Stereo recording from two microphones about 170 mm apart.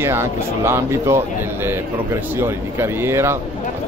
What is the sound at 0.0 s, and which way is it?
Speech, 15° right (ahead or behind).